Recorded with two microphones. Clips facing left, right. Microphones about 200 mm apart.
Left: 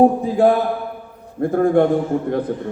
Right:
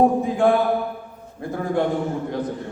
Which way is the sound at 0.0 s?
40° left (ahead or behind).